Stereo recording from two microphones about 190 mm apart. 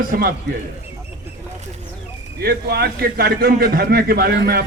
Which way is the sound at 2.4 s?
55° right (ahead or behind).